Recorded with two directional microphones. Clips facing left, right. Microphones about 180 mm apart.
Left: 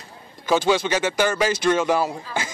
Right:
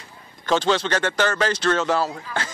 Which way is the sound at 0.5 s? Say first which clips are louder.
Left 1 dB; 10° left (ahead or behind).